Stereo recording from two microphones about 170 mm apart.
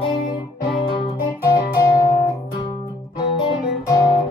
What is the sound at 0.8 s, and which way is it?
Music, 30° left (ahead or behind).